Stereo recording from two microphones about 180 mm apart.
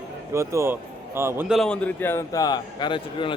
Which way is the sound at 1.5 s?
5° left (ahead or behind).